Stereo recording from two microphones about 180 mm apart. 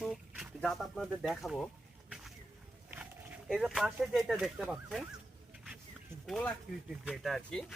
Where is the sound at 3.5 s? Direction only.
Centre (ahead or behind).